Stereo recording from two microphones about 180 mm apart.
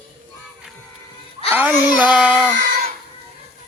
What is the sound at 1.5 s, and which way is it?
Music, 10° right (ahead or behind).